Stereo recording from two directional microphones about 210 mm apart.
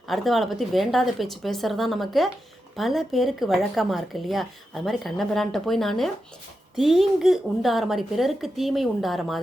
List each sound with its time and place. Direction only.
0.1 s speech: centre (ahead or behind)